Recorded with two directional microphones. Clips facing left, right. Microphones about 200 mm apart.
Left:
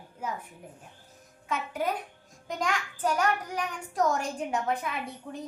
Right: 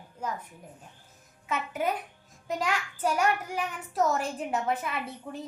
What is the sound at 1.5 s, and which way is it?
A woman's voice, 5° right (ahead or behind).